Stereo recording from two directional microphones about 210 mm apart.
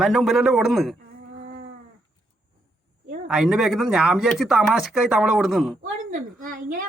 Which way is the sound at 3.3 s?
5° right (ahead or behind).